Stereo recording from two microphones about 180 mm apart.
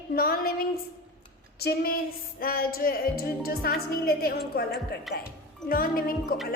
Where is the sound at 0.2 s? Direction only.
55° left (ahead or behind).